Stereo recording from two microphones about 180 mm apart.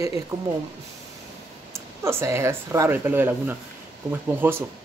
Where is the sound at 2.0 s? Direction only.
15° right (ahead or behind).